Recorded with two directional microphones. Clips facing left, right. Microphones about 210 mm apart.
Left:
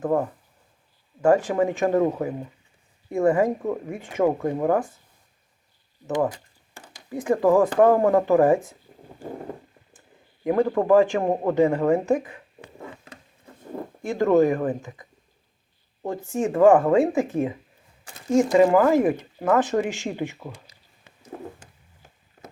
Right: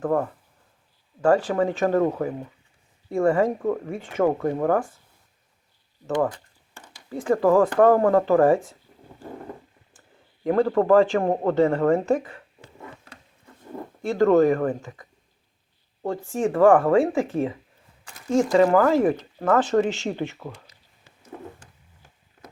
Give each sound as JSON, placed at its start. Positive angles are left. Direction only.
{"t": 0.0, "sound": "speech", "side_deg": 20}
{"t": 3.1, "sound": "speech", "side_deg": 20}
{"t": 6.9, "sound": "speech", "side_deg": 20}
{"t": 10.4, "sound": "speech", "side_deg": 15}
{"t": 14.0, "sound": "speech", "side_deg": 15}
{"t": 16.0, "sound": "speech", "side_deg": 20}